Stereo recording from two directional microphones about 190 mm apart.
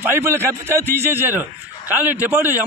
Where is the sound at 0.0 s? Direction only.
10° right (ahead or behind).